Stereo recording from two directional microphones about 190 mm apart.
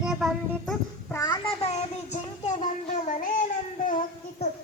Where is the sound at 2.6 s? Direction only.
40° left (ahead or behind).